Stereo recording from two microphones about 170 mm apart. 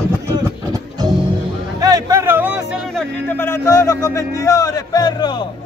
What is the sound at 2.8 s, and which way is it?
A man's voice, 5° left (ahead or behind).